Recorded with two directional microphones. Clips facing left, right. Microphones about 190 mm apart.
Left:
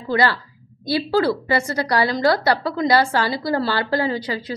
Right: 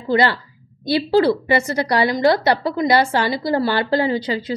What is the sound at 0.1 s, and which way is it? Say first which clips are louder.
A woman's voice: right 2 dB; 25° right (ahead or behind).